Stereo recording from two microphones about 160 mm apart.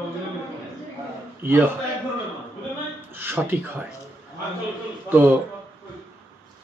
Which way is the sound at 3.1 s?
15° right (ahead or behind).